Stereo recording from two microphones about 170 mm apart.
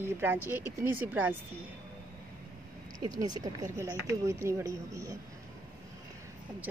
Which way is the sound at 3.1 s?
20° right (ahead or behind).